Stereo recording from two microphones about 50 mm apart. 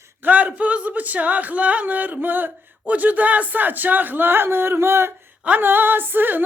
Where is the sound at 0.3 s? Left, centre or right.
Right.